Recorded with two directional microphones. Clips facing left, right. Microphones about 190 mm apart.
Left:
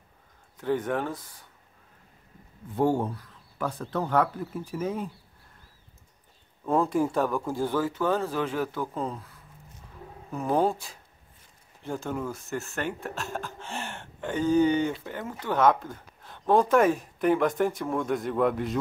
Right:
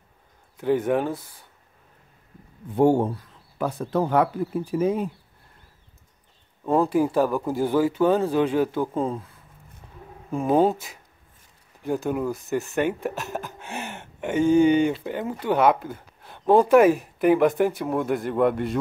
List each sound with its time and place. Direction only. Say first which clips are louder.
0.6 s speech: right 6 dB; 10° right (ahead or behind)
2.7 s speech: right 6 dB; 20° right (ahead or behind)
6.6 s speech: right 4 dB; 10° right (ahead or behind); by 9.2 s 30° right (ahead or behind)
10.3 s speech: right 5 dB; 25° right (ahead or behind); by 18.8 s centre (ahead or behind)